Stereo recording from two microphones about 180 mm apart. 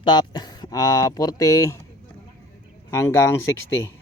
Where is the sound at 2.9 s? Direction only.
15° left (ahead or behind).